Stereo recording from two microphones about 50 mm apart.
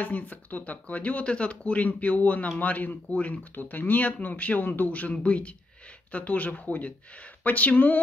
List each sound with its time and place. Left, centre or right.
0.0 s speech: left
3.5 s speech: left